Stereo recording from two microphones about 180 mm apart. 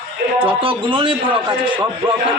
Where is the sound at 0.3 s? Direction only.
30° right (ahead or behind).